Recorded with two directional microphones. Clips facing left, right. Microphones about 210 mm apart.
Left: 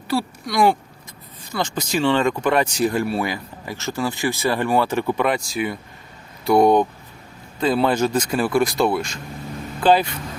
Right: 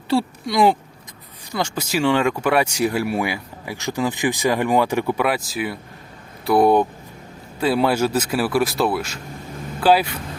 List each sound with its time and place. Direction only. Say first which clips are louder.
0.1 s speech: right 3 dB; 25° right (ahead or behind)
1.5 s speech: even; 10° right (ahead or behind)